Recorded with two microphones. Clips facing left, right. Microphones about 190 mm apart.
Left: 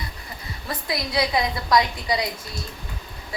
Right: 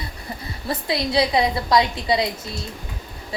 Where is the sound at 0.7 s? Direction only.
25° right (ahead or behind).